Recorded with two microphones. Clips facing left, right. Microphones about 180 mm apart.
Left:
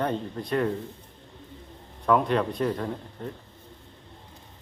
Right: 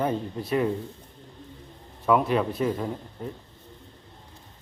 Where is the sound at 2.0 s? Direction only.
5° right (ahead or behind).